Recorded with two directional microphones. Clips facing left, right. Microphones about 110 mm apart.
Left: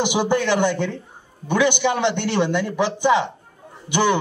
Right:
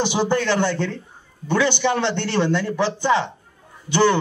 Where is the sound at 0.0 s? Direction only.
15° left (ahead or behind).